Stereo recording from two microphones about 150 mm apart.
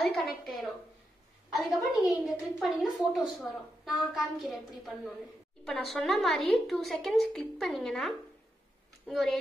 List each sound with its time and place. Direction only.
0.0 s a woman's voice: centre (ahead or behind)
1.8 s a woman's voice: 25° left (ahead or behind)
2.2 s a woman's voice: centre (ahead or behind)